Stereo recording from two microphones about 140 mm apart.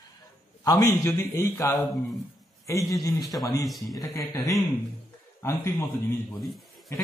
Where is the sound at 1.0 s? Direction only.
20° left (ahead or behind).